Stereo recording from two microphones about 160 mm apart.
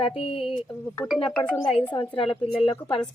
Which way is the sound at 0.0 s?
35° left (ahead or behind).